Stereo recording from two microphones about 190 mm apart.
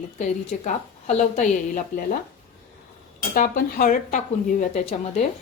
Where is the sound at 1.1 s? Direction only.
40° left (ahead or behind).